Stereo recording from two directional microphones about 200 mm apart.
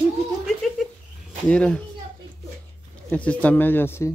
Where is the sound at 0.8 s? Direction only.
Centre (ahead or behind).